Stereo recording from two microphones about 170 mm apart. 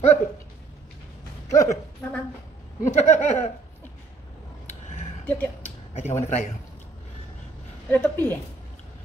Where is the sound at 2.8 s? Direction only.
45° left (ahead or behind).